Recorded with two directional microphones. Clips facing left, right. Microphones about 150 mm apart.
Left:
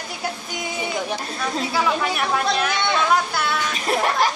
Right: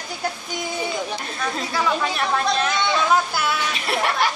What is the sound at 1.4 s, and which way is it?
Speech, 5° left (ahead or behind).